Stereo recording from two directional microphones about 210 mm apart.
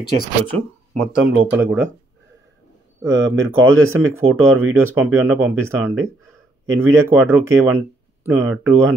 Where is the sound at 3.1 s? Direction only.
65° right (ahead or behind); by 4.7 s 80° right.